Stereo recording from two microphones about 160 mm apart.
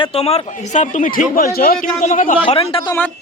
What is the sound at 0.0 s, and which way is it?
Speech, 40° left (ahead or behind).